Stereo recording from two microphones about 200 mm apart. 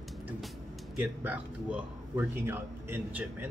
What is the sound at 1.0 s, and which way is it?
A man's voice, 5° right (ahead or behind).